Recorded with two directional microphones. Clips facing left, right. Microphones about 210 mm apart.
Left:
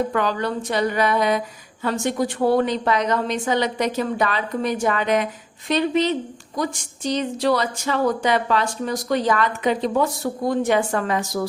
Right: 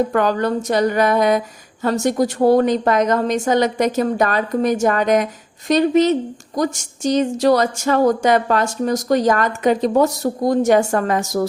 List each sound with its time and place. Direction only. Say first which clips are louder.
0.1 s a woman's voice: right 5 dB; 45° right (ahead or behind)